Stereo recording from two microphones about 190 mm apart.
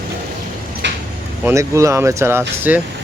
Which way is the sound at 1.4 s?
15° right (ahead or behind).